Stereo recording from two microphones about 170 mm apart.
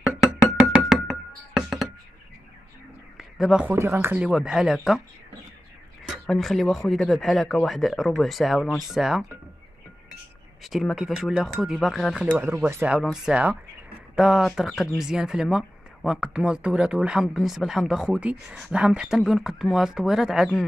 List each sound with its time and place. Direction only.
0.7 s music: centre (ahead or behind)
3.2 s a sound: centre (ahead or behind)
3.6 s speech: 15° right (ahead or behind)
6.0 s speech: centre (ahead or behind)
10.6 s speech: centre (ahead or behind)